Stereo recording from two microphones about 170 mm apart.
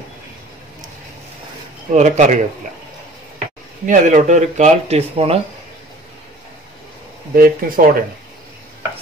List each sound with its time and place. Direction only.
2.0 s speech: 45° right (ahead or behind)
3.8 s speech: 45° right (ahead or behind)
7.3 s speech: 60° right (ahead or behind)